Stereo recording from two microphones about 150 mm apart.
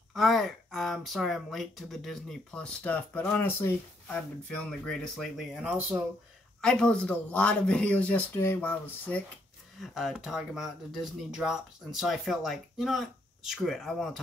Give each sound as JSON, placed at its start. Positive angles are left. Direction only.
{"t": 0.1, "sound": "speech", "side_deg": 0}
{"t": 6.6, "sound": "speech", "side_deg": 5}
{"t": 9.8, "sound": "speech", "side_deg": 0}